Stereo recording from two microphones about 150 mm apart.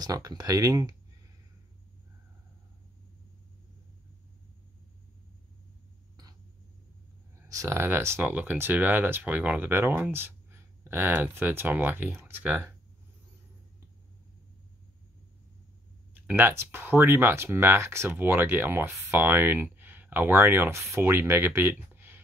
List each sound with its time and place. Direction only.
0.0 s speech: 25° right (ahead or behind)
7.3 s speech: 20° right (ahead or behind)
16.3 s speech: 15° right (ahead or behind)